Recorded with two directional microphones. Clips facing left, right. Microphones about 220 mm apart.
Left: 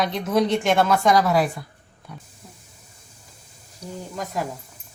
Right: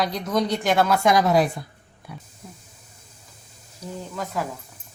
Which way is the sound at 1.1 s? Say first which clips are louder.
Right 1 dB; 20° right (ahead or behind).